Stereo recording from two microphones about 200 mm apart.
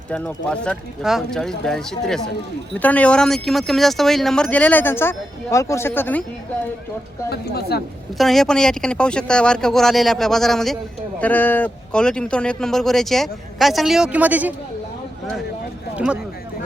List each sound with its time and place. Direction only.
0.1 s speech: 5° left (ahead or behind)
7.3 s speech: 50° left (ahead or behind)
8.2 s speech: centre (ahead or behind)